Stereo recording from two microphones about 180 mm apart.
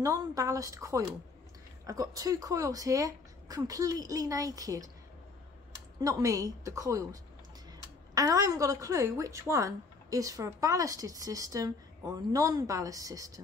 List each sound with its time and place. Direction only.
0.0 s a woman's voice: 20° right (ahead or behind)
5.9 s a woman's voice: 20° right (ahead or behind)